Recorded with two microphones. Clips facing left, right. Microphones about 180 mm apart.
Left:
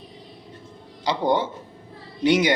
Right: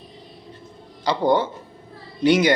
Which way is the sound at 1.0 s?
20° left (ahead or behind).